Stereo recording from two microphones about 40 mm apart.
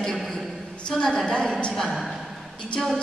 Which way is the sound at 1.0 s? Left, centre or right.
Centre.